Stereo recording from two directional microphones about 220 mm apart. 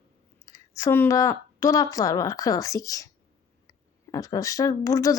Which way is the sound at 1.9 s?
15° left (ahead or behind).